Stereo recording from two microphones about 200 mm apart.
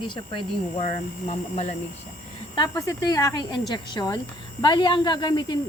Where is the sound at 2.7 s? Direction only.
15° left (ahead or behind).